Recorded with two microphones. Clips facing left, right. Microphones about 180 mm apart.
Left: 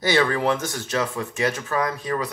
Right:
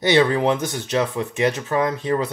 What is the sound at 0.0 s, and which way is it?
Speech, 20° right (ahead or behind).